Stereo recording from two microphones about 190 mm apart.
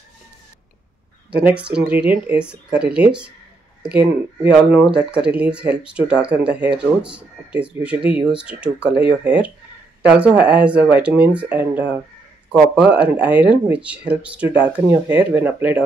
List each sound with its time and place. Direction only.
1.4 s speech: 5° right (ahead or behind)
13.0 s speech: 5° right (ahead or behind)